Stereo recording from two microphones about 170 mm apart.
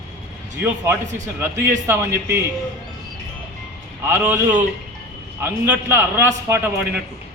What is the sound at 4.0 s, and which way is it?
A man's voice, 10° right (ahead or behind).